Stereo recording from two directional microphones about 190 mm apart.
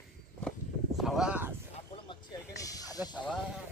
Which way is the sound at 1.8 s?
25° left (ahead or behind).